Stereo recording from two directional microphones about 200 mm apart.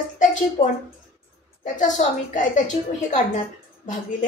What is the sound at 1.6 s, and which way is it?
A woman's voice, 40° left (ahead or behind).